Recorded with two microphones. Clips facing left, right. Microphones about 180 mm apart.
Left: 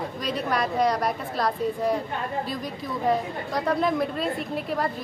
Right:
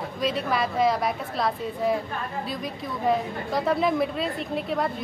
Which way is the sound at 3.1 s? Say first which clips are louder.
Right 1 dB; centre (ahead or behind).